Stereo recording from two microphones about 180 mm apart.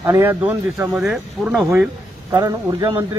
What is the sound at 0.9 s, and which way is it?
Speech, centre (ahead or behind).